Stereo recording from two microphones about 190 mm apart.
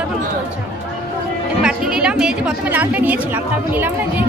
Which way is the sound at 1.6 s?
5° right (ahead or behind).